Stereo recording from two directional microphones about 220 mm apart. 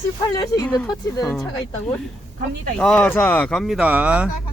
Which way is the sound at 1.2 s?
Centre (ahead or behind).